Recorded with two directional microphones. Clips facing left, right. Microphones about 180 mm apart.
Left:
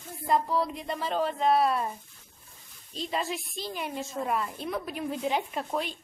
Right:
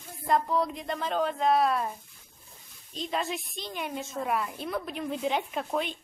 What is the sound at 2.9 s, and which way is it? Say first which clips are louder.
A woman's voice: even; centre (ahead or behind).